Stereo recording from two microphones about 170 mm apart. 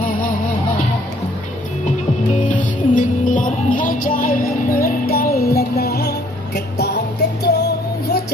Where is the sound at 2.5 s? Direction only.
50° left (ahead or behind).